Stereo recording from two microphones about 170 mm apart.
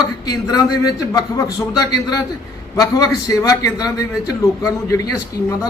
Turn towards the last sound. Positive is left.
turn(degrees=20)  # may be behind; listen again after turning